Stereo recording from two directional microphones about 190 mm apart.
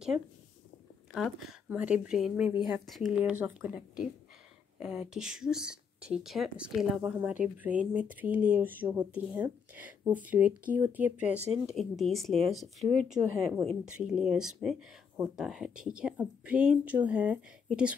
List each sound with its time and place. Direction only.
1.1 s a woman's voice: centre (ahead or behind)
11.3 s speech: 35° right (ahead or behind)
11.6 s speech: centre (ahead or behind)
13.3 s speech: 10° right (ahead or behind)